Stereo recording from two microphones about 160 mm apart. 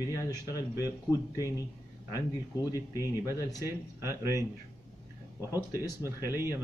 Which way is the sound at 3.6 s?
15° right (ahead or behind).